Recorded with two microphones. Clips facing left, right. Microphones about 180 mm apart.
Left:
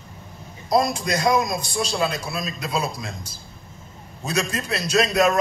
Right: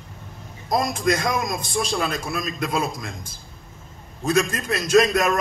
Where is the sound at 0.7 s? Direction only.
50° right (ahead or behind).